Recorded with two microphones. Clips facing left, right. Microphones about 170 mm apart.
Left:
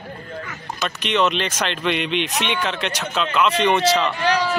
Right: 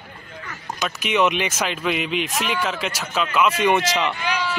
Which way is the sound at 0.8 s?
10° right (ahead or behind).